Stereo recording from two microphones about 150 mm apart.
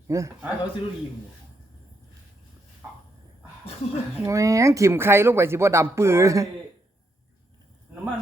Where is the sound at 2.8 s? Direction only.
15° right (ahead or behind).